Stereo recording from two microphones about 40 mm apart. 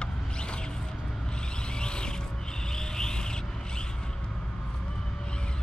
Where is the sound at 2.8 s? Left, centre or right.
Centre.